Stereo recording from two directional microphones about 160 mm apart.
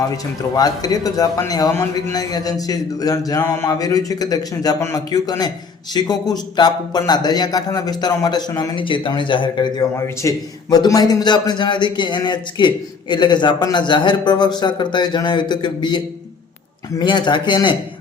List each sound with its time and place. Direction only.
0.5 s a man's voice: 25° left (ahead or behind)
9.9 s a man's voice: 20° left (ahead or behind)
17.0 s a man's voice: 30° left (ahead or behind)